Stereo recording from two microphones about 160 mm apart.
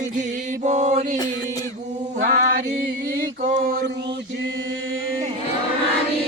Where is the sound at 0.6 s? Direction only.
45° right (ahead or behind).